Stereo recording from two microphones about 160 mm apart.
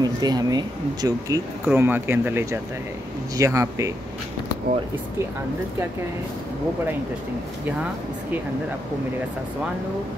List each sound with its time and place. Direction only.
0.0 s speech: 25° right (ahead or behind)
1.7 s speech: 15° right (ahead or behind)